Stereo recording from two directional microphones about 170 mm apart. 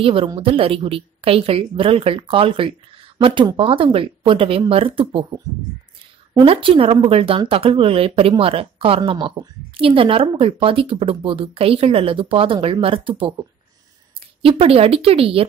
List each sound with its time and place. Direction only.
0.0 s speech: 30° right (ahead or behind)
6.3 s speech: 30° right (ahead or behind)